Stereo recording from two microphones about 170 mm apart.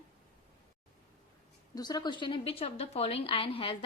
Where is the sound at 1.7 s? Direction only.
25° left (ahead or behind).